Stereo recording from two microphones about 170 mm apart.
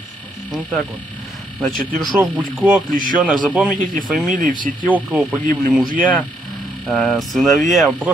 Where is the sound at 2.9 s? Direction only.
55° right (ahead or behind).